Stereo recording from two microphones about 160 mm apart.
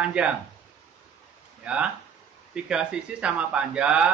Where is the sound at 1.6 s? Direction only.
5° right (ahead or behind).